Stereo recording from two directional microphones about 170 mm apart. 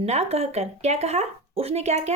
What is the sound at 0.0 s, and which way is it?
Speech, 40° right (ahead or behind).